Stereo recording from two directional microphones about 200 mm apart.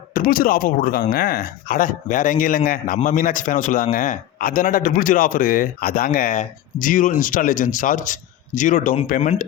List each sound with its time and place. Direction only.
0.1 s speech: 45° left (ahead or behind)